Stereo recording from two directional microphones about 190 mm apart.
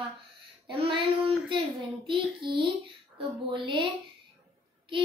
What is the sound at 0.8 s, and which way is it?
A child's voice, 30° right (ahead or behind).